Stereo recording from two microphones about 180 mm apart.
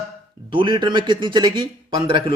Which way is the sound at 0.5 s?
25° right (ahead or behind).